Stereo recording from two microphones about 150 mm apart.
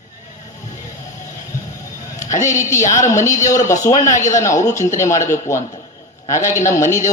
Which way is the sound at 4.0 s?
55° left (ahead or behind).